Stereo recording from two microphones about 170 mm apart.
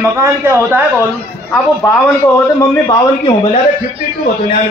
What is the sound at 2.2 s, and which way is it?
Speech, 25° left (ahead or behind).